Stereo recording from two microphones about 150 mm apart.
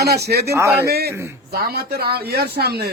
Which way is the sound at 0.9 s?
90° right.